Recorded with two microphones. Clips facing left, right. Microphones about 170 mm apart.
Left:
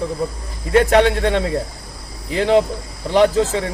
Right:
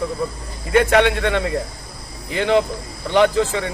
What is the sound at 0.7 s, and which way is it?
Speech, 35° left (ahead or behind).